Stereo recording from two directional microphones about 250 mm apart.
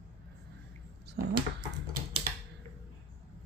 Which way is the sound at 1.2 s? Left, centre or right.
Right.